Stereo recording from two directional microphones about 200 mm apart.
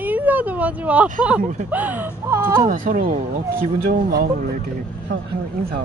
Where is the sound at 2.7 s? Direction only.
40° right (ahead or behind).